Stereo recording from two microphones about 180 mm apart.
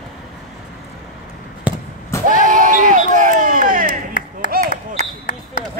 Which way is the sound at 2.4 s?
45° right (ahead or behind).